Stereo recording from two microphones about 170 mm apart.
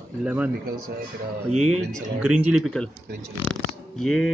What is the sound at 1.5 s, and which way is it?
Speech, 40° right (ahead or behind).